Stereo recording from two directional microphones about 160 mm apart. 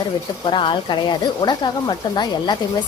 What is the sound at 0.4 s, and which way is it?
Speech, 30° left (ahead or behind).